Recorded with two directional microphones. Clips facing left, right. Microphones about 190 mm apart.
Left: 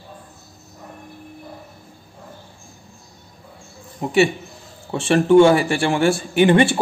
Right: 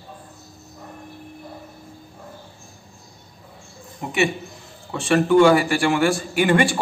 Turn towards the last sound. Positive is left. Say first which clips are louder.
# left 4 dB
turn(degrees=25)  # may be behind; listen again after turning